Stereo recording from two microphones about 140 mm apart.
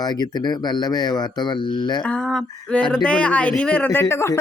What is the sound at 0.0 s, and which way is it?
Speech, 30° left (ahead or behind).